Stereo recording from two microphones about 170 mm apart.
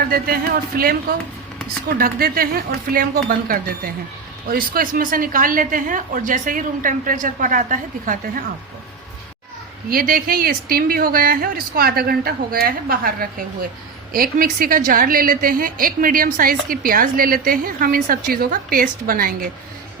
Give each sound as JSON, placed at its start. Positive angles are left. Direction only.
{"t": 0.8, "sound": "a woman's voice", "side_deg": -60}
{"t": 9.9, "sound": "a woman's voice", "side_deg": -60}